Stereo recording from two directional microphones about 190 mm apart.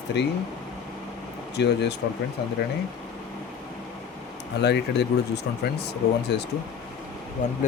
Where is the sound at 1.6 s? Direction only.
65° left (ahead or behind).